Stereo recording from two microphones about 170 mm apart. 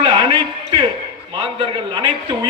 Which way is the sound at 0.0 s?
25° right (ahead or behind).